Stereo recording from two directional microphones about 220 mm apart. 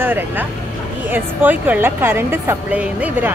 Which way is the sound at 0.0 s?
10° right (ahead or behind).